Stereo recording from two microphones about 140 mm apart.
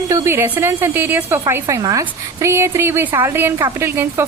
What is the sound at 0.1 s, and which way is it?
A woman's voice, 15° right (ahead or behind).